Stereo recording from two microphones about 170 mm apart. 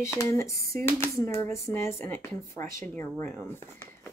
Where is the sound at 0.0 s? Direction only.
15° left (ahead or behind).